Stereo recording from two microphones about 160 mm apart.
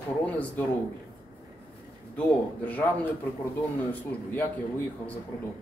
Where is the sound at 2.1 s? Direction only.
10° left (ahead or behind).